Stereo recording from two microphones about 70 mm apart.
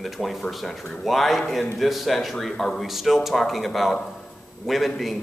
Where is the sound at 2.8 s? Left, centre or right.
Centre.